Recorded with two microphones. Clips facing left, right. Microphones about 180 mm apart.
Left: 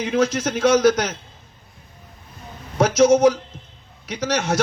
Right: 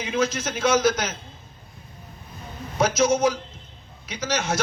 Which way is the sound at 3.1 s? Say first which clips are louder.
Left 6 dB; 70° left (ahead or behind).